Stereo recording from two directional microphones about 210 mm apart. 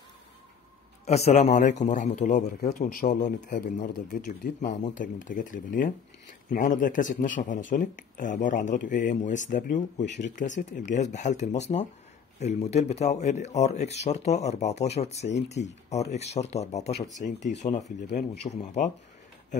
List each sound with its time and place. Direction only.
1.0 s a man's voice: 30° left (ahead or behind)
18.4 s speech: 25° left (ahead or behind)